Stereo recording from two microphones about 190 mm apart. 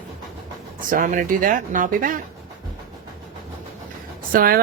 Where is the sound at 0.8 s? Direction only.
45° right (ahead or behind).